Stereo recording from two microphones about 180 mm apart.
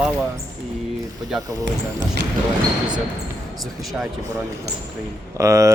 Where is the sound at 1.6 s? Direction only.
90° right.